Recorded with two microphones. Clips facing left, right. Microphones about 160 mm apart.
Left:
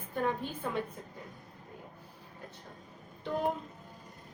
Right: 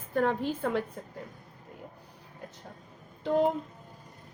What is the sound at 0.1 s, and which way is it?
Speech, 85° right.